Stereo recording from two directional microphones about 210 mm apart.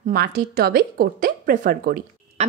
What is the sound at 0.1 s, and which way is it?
Speech, 45° right (ahead or behind).